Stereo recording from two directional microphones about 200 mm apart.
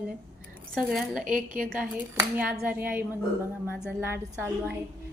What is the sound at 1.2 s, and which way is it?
Speech, 40° right (ahead or behind).